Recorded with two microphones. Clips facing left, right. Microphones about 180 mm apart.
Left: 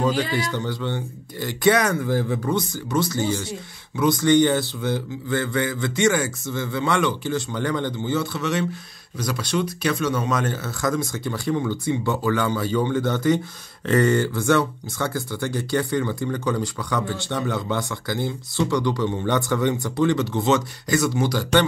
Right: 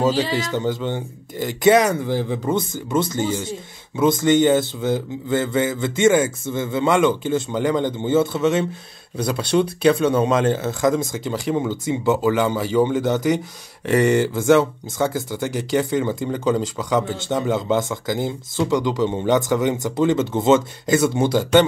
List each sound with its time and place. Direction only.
0.0 s speech: 20° right (ahead or behind)